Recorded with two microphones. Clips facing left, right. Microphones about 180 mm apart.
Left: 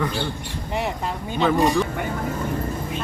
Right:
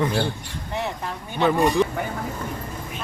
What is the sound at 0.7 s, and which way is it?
Speech, 15° left (ahead or behind).